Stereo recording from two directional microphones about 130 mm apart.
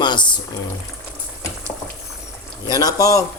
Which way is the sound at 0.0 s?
35° left (ahead or behind).